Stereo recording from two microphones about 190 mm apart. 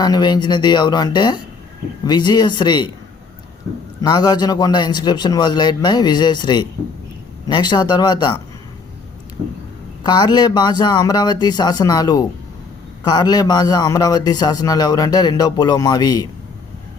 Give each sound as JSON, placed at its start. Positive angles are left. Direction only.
{"t": 0.0, "sound": "a man's voice", "side_deg": 20}
{"t": 4.0, "sound": "a man's voice", "side_deg": 20}
{"t": 10.1, "sound": "a man's voice", "side_deg": 20}